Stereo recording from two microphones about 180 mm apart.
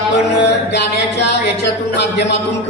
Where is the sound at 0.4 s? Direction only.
70° left (ahead or behind).